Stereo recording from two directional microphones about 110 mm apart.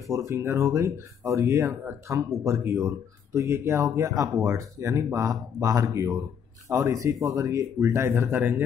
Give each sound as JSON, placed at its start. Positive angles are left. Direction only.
{"t": 0.0, "sound": "speech", "side_deg": -25}